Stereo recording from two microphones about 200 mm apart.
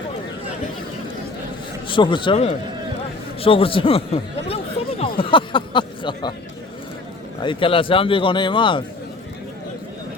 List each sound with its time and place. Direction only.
1.9 s speech: 25° left (ahead or behind)
3.4 s a sound: 25° left (ahead or behind)
5.2 s speech: 25° left (ahead or behind)
7.4 s speech: 25° left (ahead or behind)